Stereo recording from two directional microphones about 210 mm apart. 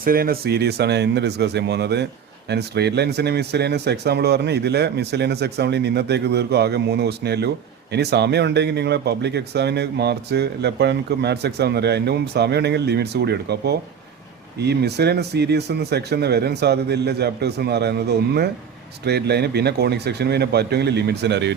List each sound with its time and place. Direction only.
0.0 s speech: 45° right (ahead or behind)